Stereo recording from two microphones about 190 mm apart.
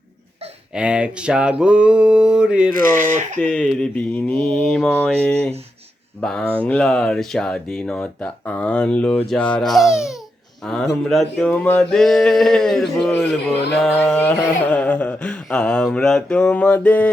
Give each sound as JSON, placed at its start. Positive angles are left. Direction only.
{"t": 0.7, "sound": "speech", "side_deg": -5}
{"t": 2.7, "sound": "speech", "side_deg": -45}
{"t": 3.4, "sound": "speech", "side_deg": 5}
{"t": 5.2, "sound": "a sound", "side_deg": 5}
{"t": 6.1, "sound": "speech", "side_deg": 5}
{"t": 13.9, "sound": "a sound", "side_deg": 10}